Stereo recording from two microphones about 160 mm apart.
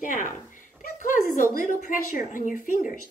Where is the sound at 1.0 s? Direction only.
55° left (ahead or behind).